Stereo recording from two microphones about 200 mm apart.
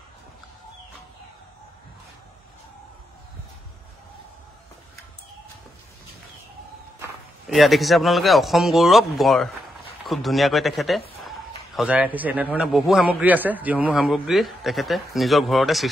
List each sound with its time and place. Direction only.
7.4 s a man's voice: centre (ahead or behind)